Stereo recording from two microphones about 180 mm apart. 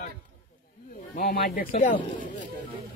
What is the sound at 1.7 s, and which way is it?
Speech, 40° left (ahead or behind).